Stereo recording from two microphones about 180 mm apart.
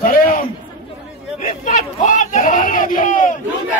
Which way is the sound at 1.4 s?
45° left (ahead or behind).